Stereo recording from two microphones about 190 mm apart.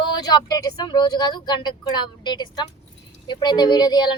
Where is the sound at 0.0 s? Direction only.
20° left (ahead or behind).